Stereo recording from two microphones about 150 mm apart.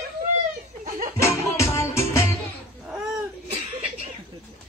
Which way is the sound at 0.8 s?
60° right (ahead or behind).